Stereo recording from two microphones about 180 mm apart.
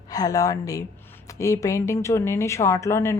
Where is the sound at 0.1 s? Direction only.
20° left (ahead or behind).